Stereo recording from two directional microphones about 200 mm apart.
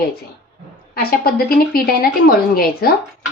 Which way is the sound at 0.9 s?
50° left (ahead or behind).